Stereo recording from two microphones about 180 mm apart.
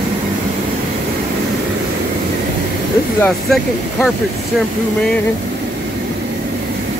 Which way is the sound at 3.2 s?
10° left (ahead or behind).